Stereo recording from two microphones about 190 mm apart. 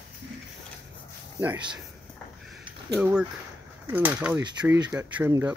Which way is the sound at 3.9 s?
10° right (ahead or behind).